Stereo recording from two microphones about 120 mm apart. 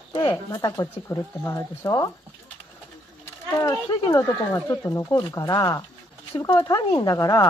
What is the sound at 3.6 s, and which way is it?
Speech, 30° left (ahead or behind).